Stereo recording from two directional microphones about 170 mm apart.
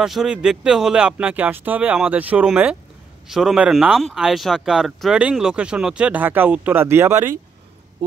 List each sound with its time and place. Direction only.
0.0 s speech: 5° right (ahead or behind)